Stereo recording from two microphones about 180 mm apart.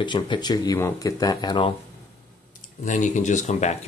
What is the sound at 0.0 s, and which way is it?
Speech, 25° left (ahead or behind).